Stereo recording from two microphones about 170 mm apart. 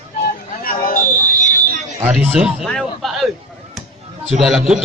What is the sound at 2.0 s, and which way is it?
A man's voice, 5° right (ahead or behind).